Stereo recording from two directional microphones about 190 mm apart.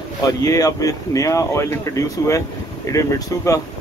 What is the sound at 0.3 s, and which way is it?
Speech, 20° left (ahead or behind).